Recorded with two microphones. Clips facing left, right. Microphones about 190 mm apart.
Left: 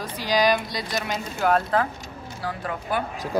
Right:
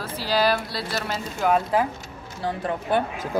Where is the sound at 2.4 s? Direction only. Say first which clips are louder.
Right 4 dB; 25° right (ahead or behind).